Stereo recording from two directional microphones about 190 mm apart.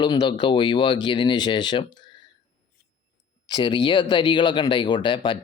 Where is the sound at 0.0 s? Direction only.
25° left (ahead or behind).